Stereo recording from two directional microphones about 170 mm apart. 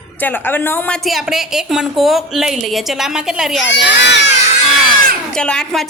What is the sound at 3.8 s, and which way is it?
Speech, 90° left.